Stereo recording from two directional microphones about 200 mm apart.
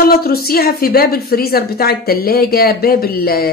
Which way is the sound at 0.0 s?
50° left (ahead or behind).